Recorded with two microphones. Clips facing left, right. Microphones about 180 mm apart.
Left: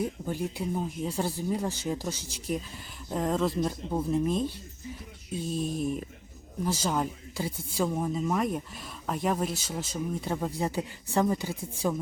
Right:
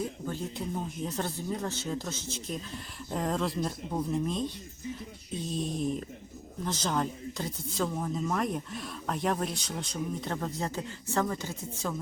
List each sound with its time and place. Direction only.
0.0 s speech: 15° left (ahead or behind)